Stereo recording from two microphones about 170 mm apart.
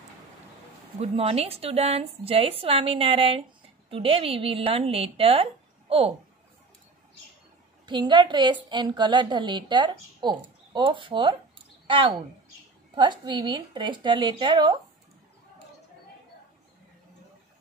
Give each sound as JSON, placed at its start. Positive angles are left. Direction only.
{"t": 0.9, "sound": "a woman's voice", "side_deg": -35}
{"t": 7.8, "sound": "a woman's voice", "side_deg": -25}